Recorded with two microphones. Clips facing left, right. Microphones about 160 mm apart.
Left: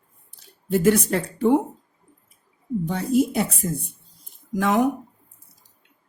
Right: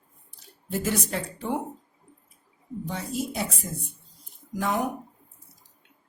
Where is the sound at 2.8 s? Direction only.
60° left (ahead or behind).